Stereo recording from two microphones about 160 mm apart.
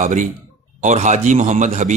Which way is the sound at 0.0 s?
50° right (ahead or behind).